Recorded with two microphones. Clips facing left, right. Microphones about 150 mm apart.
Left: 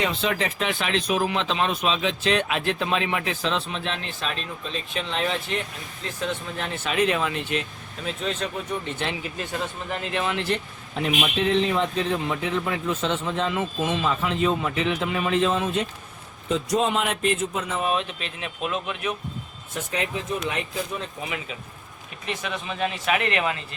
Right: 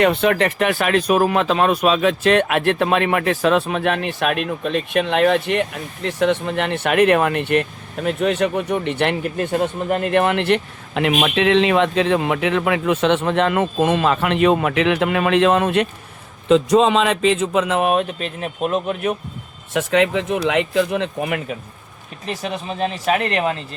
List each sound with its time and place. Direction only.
0.0 s speech: 60° right (ahead or behind)
16.5 s speech: 90° right; by 19.1 s 40° right (ahead or behind)
19.7 s speech: 90° right; by 21.5 s 60° right (ahead or behind)
22.3 s speech: 40° right (ahead or behind)